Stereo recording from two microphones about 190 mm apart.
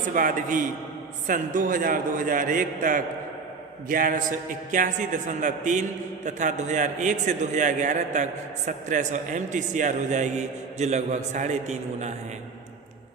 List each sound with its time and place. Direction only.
0.1 s a man's voice: 45° right (ahead or behind)